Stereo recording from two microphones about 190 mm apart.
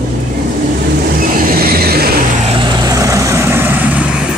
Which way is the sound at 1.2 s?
50° right (ahead or behind).